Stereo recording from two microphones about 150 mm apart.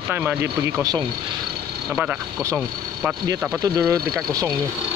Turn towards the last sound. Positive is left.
turn(degrees=-20)  # may be behind; listen again after turning